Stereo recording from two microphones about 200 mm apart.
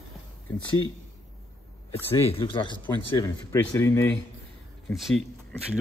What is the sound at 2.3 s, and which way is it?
Speech, 25° left (ahead or behind).